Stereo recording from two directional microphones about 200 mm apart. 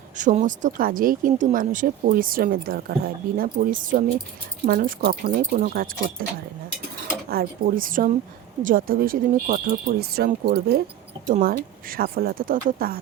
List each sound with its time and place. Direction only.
0.2 s speech: 40° right (ahead or behind)
7.3 s speech: 45° right (ahead or behind)